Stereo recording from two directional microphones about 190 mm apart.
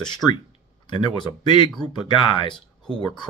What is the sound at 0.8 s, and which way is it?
Speech, 25° left (ahead or behind).